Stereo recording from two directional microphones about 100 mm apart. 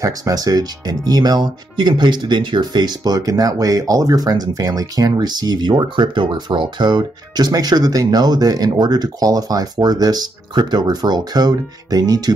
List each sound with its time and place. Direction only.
0.0 s speech: 35° right (ahead or behind)